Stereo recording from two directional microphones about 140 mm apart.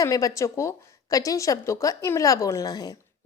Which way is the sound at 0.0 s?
25° left (ahead or behind).